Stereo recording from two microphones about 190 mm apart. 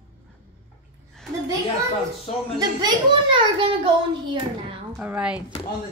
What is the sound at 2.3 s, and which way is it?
Speech, 35° left (ahead or behind).